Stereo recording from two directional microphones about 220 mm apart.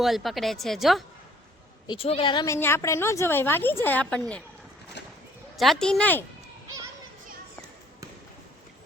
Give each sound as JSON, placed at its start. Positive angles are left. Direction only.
{"t": 0.0, "sound": "a woman's voice", "side_deg": 0}
{"t": 1.9, "sound": "a woman's voice", "side_deg": 25}
{"t": 5.0, "sound": "a sound", "side_deg": 50}
{"t": 5.5, "sound": "a woman's voice", "side_deg": 0}